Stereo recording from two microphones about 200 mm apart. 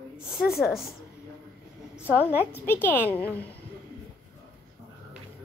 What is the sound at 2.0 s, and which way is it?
A woman's voice, 10° left (ahead or behind).